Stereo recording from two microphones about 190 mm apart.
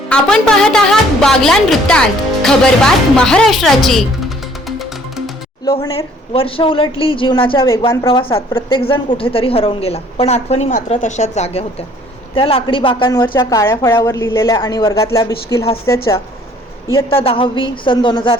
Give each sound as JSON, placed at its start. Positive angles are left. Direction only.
{"t": 0.1, "sound": "a woman's voice", "side_deg": 5}
{"t": 4.8, "sound": "music", "side_deg": 0}
{"t": 5.6, "sound": "a woman's voice", "side_deg": 25}
{"t": 16.9, "sound": "speech", "side_deg": 30}